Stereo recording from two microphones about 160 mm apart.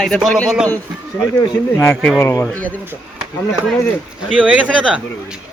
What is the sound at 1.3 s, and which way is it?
Speech, 25° left (ahead or behind).